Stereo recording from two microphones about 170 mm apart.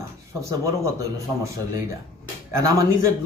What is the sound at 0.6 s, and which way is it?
Speech, 20° right (ahead or behind).